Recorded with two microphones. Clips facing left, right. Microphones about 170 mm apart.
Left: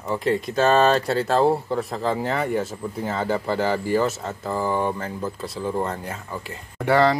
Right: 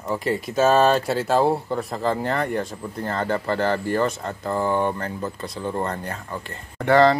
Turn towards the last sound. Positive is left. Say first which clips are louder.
# right 2 dB
turn(degrees=5)  # may be behind; listen again after turning